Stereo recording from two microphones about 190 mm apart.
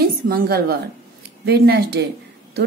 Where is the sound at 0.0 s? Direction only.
55° right (ahead or behind).